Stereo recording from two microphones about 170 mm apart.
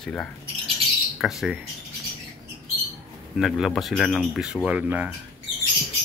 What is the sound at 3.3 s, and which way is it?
Speech, centre (ahead or behind).